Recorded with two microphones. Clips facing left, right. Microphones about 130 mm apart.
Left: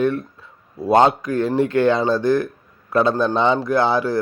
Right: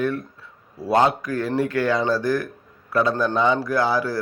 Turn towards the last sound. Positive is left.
turn(degrees=25)  # may be behind; listen again after turning